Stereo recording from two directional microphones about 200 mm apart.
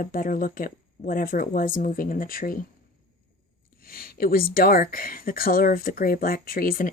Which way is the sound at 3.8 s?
45° left (ahead or behind).